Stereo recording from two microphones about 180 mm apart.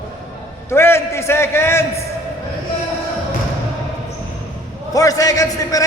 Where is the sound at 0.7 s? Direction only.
15° left (ahead or behind).